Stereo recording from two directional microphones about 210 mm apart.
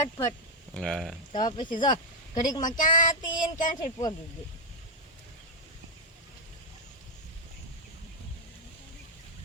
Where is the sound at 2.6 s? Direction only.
40° left (ahead or behind).